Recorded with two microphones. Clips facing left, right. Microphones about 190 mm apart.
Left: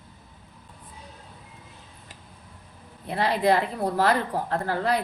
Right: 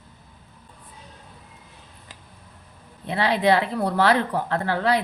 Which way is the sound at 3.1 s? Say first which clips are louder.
Right 2 dB; 75° right (ahead or behind).